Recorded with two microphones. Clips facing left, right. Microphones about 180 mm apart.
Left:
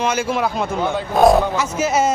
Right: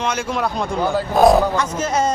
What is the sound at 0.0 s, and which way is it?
Speech, 5° left (ahead or behind).